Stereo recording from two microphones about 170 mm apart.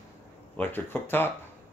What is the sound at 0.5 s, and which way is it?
Speech, 10° left (ahead or behind).